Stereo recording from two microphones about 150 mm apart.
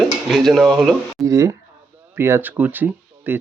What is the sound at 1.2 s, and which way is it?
Speech, 20° right (ahead or behind).